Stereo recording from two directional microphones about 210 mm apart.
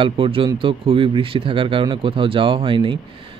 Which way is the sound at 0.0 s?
25° right (ahead or behind).